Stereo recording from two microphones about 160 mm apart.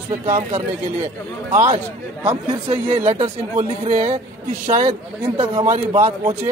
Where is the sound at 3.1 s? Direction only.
40° right (ahead or behind).